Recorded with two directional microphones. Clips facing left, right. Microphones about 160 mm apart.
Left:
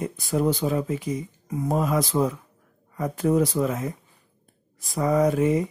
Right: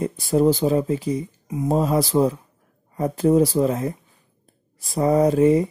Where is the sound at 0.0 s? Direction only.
30° right (ahead or behind).